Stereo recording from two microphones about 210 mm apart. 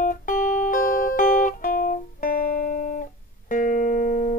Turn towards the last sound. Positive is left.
turn(degrees=40)  # may be behind; listen again after turning